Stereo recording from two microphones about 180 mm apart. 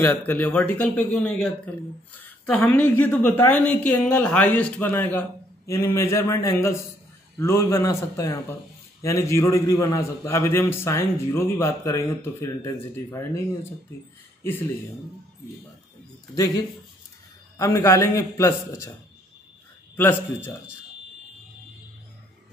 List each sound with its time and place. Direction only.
0.0 s a man's voice: 10° left (ahead or behind)
16.3 s a man's voice: 20° left (ahead or behind)
20.0 s a man's voice: 10° left (ahead or behind)